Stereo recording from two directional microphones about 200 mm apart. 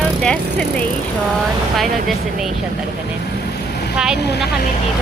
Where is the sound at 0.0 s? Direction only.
5° left (ahead or behind).